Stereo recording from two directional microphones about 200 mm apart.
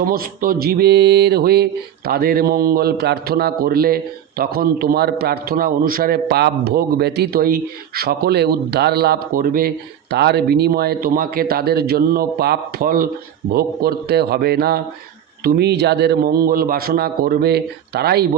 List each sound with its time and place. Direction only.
0.0 s a man's voice: 45° right (ahead or behind)